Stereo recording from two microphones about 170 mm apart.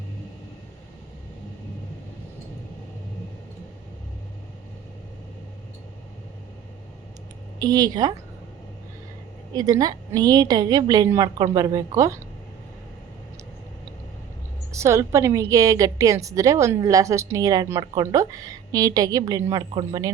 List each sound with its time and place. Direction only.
7.6 s a woman's voice: 20° right (ahead or behind)
9.6 s a woman's voice: 20° right (ahead or behind)
14.7 s a woman's voice: 15° right (ahead or behind)